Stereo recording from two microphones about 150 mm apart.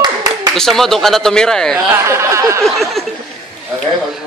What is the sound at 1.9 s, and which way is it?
Speech, 20° right (ahead or behind).